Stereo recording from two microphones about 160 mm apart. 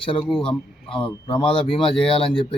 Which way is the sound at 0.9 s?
30° left (ahead or behind).